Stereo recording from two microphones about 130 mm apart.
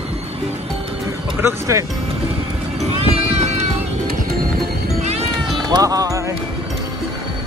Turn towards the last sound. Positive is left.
turn(degrees=-25)  # may be behind; listen again after turning